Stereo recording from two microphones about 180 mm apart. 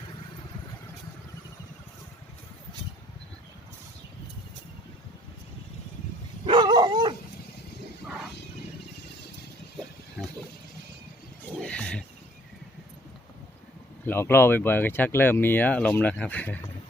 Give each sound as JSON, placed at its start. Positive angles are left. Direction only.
{"t": 6.4, "sound": "dog", "side_deg": -25}
{"t": 11.6, "sound": "wild animals", "side_deg": 5}
{"t": 14.0, "sound": "speech", "side_deg": 10}